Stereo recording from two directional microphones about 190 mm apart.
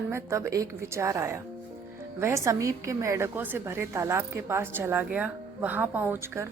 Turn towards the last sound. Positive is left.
turn(degrees=-10)  # may be behind; listen again after turning